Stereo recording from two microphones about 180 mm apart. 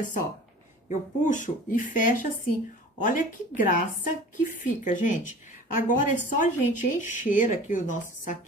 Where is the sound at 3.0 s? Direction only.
50° left (ahead or behind).